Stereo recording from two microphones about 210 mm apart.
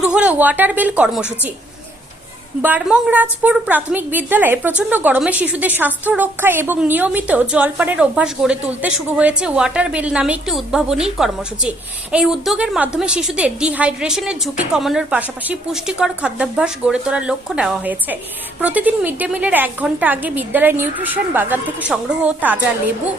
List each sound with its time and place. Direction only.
0.0 s speech: 5° right (ahead or behind)
2.6 s a woman's voice: 10° right (ahead or behind)